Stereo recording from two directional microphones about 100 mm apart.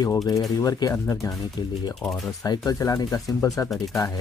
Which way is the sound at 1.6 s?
45° left (ahead or behind).